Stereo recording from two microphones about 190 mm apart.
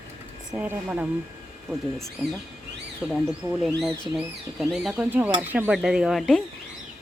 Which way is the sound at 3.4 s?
10° right (ahead or behind).